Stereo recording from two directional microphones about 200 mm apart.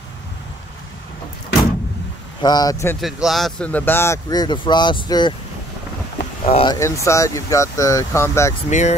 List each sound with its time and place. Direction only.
2.4 s speech: 20° left (ahead or behind)
3.0 s speech: centre (ahead or behind); by 5.3 s 20° left (ahead or behind)
6.4 s speech: 25° left (ahead or behind)
8.6 s speech: 35° left (ahead or behind)